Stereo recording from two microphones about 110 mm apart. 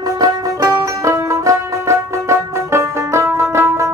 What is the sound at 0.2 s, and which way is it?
Music, 30° right (ahead or behind).